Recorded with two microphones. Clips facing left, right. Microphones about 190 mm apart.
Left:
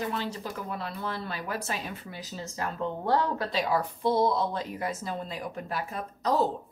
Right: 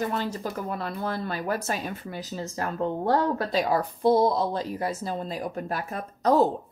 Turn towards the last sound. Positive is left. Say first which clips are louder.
# right 5 dB
turn(degrees=-50)  # may be behind; listen again after turning